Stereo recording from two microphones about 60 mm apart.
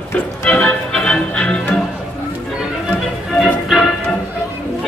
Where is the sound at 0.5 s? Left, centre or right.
Centre.